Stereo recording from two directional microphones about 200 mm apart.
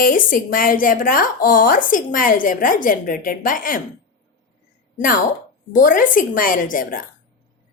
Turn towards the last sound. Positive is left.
turn(degrees=45)  # may be behind; listen again after turning